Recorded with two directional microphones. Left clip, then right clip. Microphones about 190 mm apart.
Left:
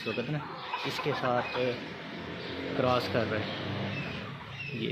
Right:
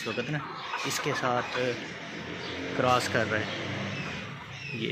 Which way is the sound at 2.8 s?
5° right (ahead or behind).